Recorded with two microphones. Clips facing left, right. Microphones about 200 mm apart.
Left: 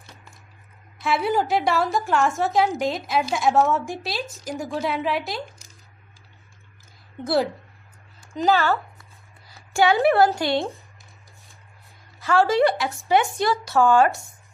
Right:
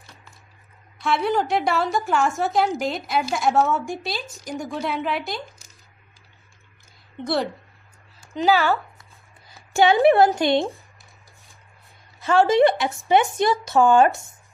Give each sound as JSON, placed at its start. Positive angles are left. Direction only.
{"t": 0.0, "sound": "a sound", "side_deg": 15}
{"t": 1.0, "sound": "a woman's voice", "side_deg": 0}
{"t": 7.2, "sound": "a woman's voice", "side_deg": 5}
{"t": 8.3, "sound": "a woman's voice", "side_deg": -5}
{"t": 9.5, "sound": "a woman's voice", "side_deg": -20}
{"t": 12.2, "sound": "speech", "side_deg": -20}